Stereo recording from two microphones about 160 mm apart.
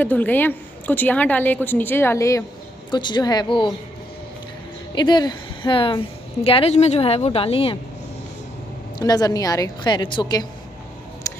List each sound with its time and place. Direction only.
0.0 s a woman's voice: 10° left (ahead or behind); by 3.7 s 30° left (ahead or behind)
4.9 s a woman's voice: 25° left (ahead or behind)
9.0 s a woman's voice: 25° left (ahead or behind)
11.3 s a sound: 20° left (ahead or behind)